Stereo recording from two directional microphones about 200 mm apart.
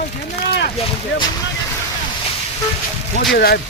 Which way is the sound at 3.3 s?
50° left (ahead or behind).